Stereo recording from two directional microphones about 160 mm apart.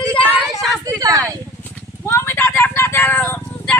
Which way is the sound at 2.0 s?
15° left (ahead or behind).